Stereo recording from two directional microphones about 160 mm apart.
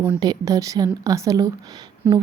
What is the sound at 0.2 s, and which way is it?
A woman's voice, 25° right (ahead or behind).